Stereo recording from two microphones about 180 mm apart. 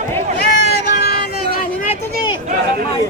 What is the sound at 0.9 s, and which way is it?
Vehicle, 60° left (ahead or behind).